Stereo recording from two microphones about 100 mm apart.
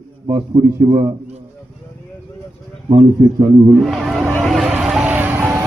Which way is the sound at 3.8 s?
Centre (ahead or behind).